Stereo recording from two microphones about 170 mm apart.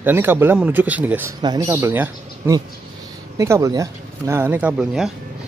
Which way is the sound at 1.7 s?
15° right (ahead or behind).